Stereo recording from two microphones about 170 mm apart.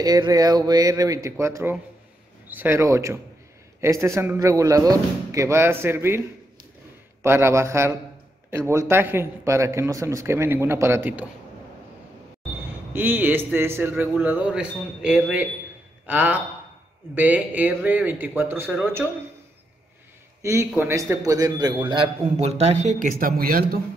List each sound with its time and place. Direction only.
0.0 s a man's voice: 20° right (ahead or behind)
7.2 s a man's voice: 15° right (ahead or behind)
12.9 s a man's voice: 10° right (ahead or behind)
20.4 s a man's voice: 15° right (ahead or behind); by 23.8 s 60° right (ahead or behind)